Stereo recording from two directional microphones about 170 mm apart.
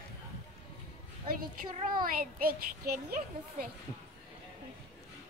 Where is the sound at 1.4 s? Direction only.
60° right (ahead or behind).